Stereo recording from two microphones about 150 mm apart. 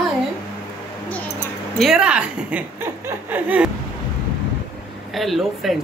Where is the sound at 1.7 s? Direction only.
Centre (ahead or behind).